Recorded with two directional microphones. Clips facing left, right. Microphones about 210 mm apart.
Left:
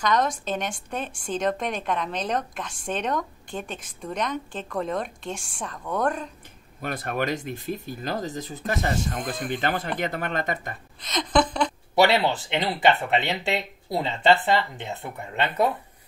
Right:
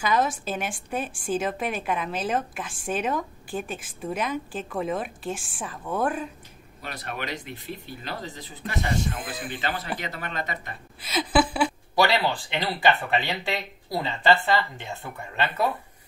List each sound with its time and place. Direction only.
0.0 s a woman's voice: 5° right (ahead or behind)
6.8 s speech: 50° left (ahead or behind)
9.2 s speech: 5° right (ahead or behind)
9.5 s speech: 50° left (ahead or behind)
11.0 s a woman's voice: 5° right (ahead or behind)
11.9 s speech: 20° left (ahead or behind)